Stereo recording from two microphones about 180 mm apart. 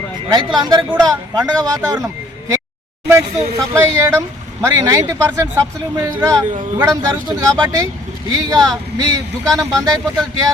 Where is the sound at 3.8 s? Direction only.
15° right (ahead or behind).